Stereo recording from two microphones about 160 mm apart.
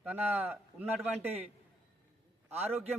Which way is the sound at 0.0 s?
10° right (ahead or behind).